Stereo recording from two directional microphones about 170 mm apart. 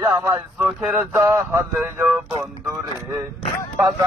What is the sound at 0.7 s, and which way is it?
Speech, 5° right (ahead or behind).